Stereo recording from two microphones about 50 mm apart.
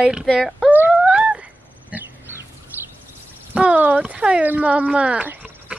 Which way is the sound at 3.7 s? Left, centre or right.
Right.